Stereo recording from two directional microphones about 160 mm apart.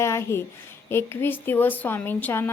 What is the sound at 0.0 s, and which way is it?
A woman's voice, 15° left (ahead or behind).